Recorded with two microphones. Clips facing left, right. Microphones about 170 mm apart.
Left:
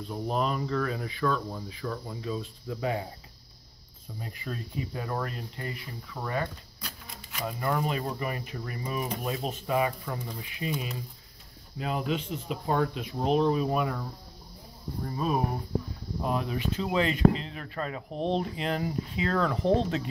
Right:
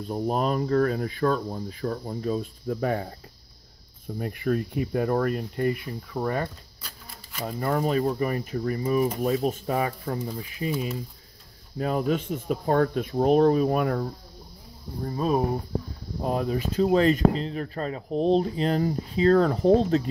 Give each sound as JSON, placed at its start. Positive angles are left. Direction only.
{"t": 0.1, "sound": "speech", "side_deg": -45}
{"t": 4.2, "sound": "speech", "side_deg": -60}
{"t": 7.4, "sound": "speech", "side_deg": -40}
{"t": 15.0, "sound": "speech", "side_deg": -35}